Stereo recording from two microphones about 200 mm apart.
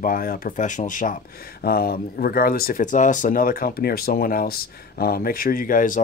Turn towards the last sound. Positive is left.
turn(degrees=40)  # may be behind; listen again after turning